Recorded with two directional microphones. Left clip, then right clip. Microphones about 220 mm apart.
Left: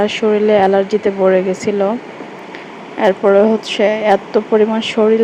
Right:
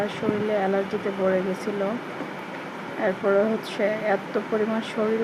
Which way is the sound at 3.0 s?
30° left (ahead or behind).